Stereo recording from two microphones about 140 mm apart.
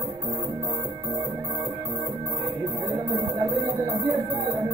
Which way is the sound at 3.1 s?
25° right (ahead or behind).